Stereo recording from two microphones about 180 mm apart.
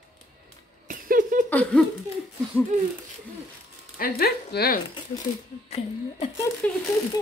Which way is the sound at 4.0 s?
55° left (ahead or behind).